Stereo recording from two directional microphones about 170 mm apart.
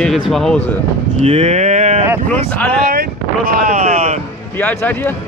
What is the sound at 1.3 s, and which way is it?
Speech, 35° right (ahead or behind).